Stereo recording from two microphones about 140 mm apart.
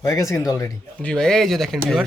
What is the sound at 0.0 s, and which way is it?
Speech, 20° left (ahead or behind).